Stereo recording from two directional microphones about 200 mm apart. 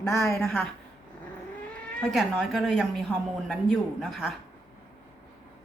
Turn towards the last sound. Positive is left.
turn(degrees=0)  # may be behind; listen again after turning